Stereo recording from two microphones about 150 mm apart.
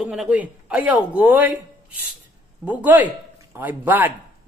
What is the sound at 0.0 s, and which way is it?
A man's voice, 5° right (ahead or behind).